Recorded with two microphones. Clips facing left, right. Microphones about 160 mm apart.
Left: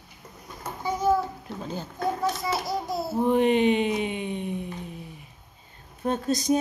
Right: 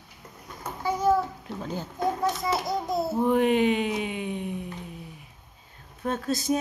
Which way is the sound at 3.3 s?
5° right (ahead or behind).